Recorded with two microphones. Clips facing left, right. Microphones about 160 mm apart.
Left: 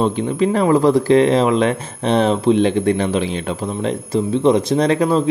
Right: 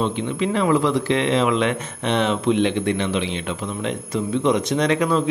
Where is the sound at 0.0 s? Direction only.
40° left (ahead or behind).